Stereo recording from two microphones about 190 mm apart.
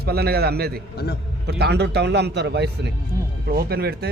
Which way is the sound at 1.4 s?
60° right (ahead or behind).